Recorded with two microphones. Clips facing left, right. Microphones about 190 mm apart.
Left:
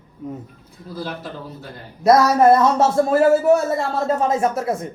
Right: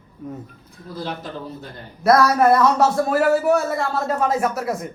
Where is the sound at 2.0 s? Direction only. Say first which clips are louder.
Left 2 dB; 20° left (ahead or behind).